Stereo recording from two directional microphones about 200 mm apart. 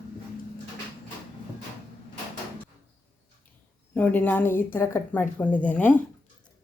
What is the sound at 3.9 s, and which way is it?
Speech, 10° left (ahead or behind).